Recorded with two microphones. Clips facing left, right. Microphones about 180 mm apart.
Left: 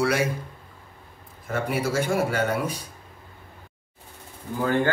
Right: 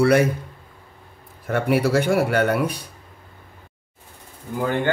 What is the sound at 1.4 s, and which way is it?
Speech, 65° right (ahead or behind).